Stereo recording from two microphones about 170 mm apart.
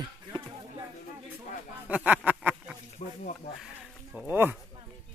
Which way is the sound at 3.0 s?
45° left (ahead or behind).